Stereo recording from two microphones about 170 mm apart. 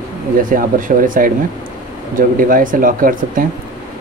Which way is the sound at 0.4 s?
55° right (ahead or behind).